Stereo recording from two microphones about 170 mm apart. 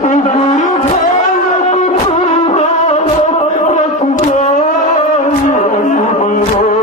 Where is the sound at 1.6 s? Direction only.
40° left (ahead or behind).